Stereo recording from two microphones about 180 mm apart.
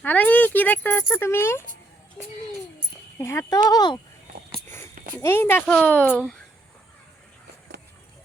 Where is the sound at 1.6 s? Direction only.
45° right (ahead or behind).